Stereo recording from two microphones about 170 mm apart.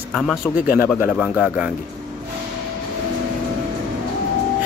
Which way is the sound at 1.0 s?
10° right (ahead or behind).